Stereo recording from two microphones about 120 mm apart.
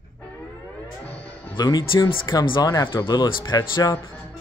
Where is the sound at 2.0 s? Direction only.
45° left (ahead or behind).